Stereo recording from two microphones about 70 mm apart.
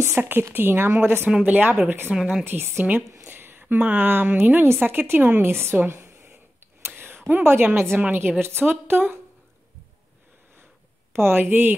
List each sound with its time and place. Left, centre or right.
0.0 s speech: right
2.1 s speech: centre
2.4 s a woman's voice: right
11.1 s speech: right